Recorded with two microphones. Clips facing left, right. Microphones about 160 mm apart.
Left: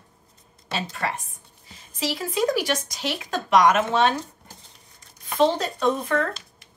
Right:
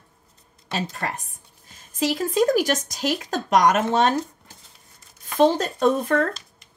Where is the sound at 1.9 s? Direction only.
45° right (ahead or behind).